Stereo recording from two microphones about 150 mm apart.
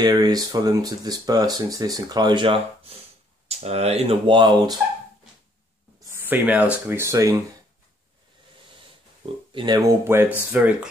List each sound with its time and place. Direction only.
0.0 s speech: 25° right (ahead or behind)
6.0 s speech: 15° right (ahead or behind)
9.2 s speech: 35° right (ahead or behind); by 10.9 s 5° right (ahead or behind)